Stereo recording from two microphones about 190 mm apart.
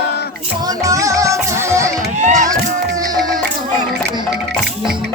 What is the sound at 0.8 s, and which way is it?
Music, 15° right (ahead or behind).